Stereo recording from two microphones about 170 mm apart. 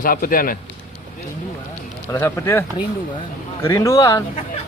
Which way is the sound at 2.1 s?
15° left (ahead or behind).